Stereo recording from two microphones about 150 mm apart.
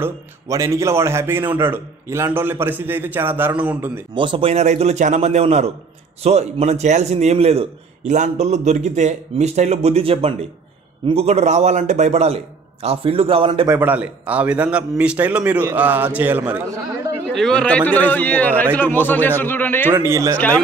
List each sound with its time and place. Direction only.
0.0 s a man's voice: 20° right (ahead or behind)
4.1 s a man's voice: 35° right (ahead or behind)
13.7 s a man's voice: 10° right (ahead or behind)
17.3 s a man's voice: 5° left (ahead or behind)
19.9 s a man's voice: 15° right (ahead or behind)
20.3 s a man's voice: 10° left (ahead or behind)